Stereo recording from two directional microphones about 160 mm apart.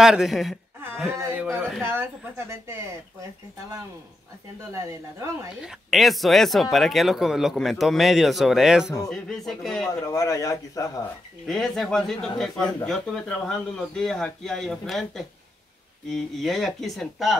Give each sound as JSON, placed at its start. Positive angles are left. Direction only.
{"t": 0.0, "sound": "speech", "side_deg": -5}
{"t": 1.0, "sound": "speech", "side_deg": -10}
{"t": 4.6, "sound": "speech", "side_deg": -20}
{"t": 5.6, "sound": "speech", "side_deg": -5}
{"t": 10.0, "sound": "a man's voice", "side_deg": 20}
{"t": 11.4, "sound": "speech", "side_deg": 0}